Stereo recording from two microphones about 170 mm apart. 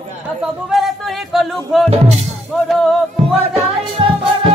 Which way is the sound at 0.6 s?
Centre (ahead or behind).